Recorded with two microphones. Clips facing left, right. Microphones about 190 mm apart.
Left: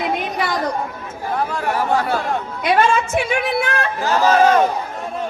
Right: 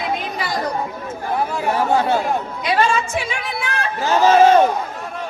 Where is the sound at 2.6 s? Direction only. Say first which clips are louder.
Left 4 dB; 55° left (ahead or behind).